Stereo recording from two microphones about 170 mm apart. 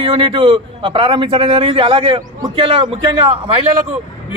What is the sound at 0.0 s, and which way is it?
A man's voice, 30° right (ahead or behind).